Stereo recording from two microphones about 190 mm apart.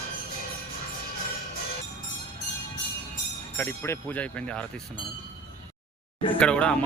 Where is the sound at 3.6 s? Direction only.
10° left (ahead or behind).